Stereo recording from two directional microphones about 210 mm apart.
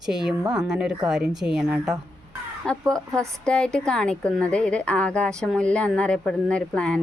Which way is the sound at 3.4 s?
5° left (ahead or behind).